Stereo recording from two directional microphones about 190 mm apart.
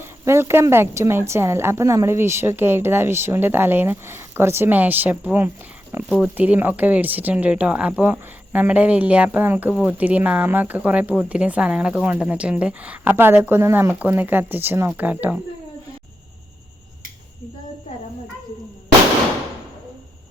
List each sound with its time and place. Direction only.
0.0 s speech: 15° right (ahead or behind)